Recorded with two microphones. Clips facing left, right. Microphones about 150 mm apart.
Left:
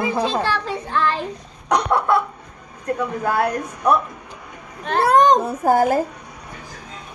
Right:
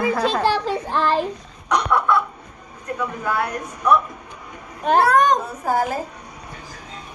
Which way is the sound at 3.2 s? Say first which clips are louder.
Left 4 dB; 35° left (ahead or behind).